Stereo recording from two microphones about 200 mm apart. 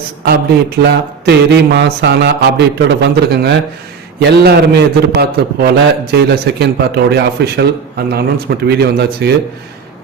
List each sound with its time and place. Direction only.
0.3 s a man's voice: 55° right (ahead or behind)